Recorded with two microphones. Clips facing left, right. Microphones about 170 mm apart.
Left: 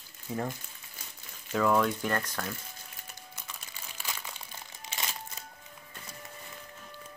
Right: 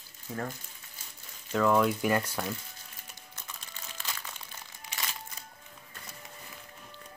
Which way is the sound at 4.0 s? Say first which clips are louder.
Left 1 dB; 10° left (ahead or behind).